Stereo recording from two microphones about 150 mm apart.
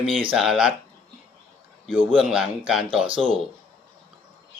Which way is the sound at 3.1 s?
35° right (ahead or behind).